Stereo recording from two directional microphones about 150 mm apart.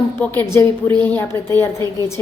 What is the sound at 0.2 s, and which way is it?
A woman's voice, 15° left (ahead or behind).